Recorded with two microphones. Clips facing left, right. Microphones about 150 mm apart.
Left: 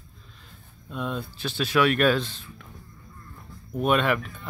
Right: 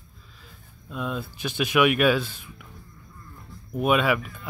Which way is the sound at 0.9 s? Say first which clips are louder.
Even; centre (ahead or behind).